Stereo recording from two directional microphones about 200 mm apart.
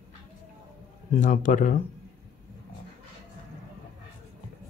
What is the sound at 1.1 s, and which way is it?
Speech, 40° left (ahead or behind).